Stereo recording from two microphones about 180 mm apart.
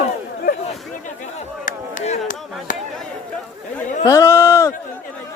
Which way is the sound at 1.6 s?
40° left (ahead or behind).